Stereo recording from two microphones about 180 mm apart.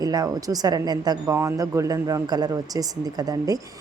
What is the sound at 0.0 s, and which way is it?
Speech, 20° right (ahead or behind).